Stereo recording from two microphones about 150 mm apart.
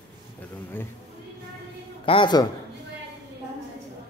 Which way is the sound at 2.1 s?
30° left (ahead or behind).